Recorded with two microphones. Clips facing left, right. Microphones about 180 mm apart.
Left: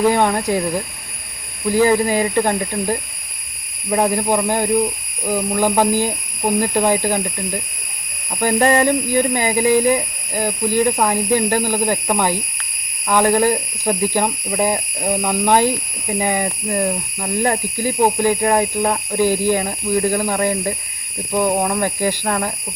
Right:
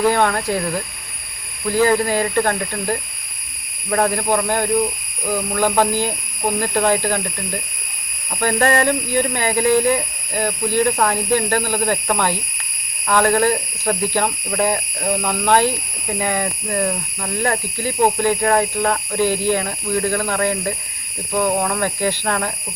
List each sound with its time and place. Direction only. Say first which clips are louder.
0.0 s speech: left 1 dB; 15° left (ahead or behind)